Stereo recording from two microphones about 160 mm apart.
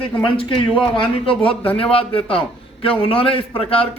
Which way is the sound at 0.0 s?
35° left (ahead or behind).